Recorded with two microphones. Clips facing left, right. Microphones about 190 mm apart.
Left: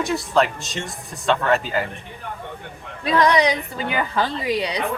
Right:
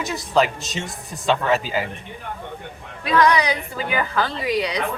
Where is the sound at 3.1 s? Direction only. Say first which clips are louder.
Left 1 dB; 30° left (ahead or behind).